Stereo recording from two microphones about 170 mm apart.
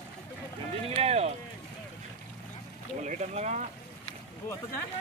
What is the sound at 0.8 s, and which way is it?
Boat, 35° right (ahead or behind).